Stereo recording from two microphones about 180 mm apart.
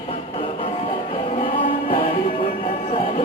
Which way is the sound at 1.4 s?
30° left (ahead or behind).